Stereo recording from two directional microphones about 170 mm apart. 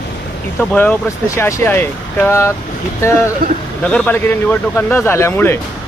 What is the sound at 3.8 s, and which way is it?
Speech, 5° left (ahead or behind).